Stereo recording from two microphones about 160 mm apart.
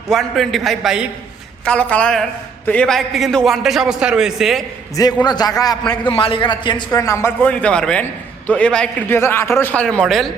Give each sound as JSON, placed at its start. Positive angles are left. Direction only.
{"t": 0.1, "sound": "a man's voice", "side_deg": 0}
{"t": 5.2, "sound": "a man's voice", "side_deg": 25}